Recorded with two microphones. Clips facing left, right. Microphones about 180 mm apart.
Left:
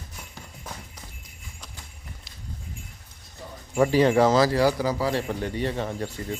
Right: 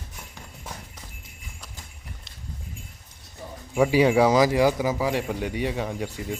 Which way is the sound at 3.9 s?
10° right (ahead or behind).